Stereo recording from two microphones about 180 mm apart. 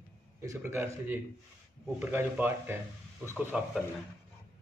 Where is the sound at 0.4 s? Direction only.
15° right (ahead or behind).